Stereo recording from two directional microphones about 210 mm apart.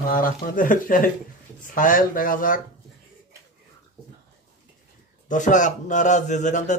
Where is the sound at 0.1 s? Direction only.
40° left (ahead or behind).